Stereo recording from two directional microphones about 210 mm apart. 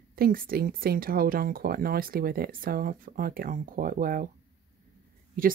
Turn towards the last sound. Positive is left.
turn(degrees=-40)  # may be behind; listen again after turning